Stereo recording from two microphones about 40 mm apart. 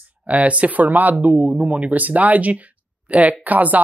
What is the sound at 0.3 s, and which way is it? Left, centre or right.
A woman's voice, right.